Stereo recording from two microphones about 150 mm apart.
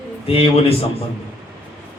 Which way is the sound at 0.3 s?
40° left (ahead or behind).